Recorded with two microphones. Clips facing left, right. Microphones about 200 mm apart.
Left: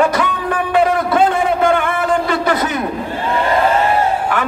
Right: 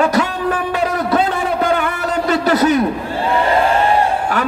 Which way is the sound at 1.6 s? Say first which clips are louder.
Left 2 dB; 40° right (ahead or behind).